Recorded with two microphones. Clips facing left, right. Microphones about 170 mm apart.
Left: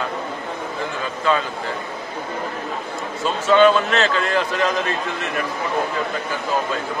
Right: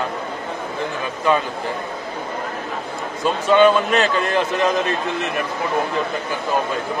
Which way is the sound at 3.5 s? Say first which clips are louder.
Even; 15° right (ahead or behind).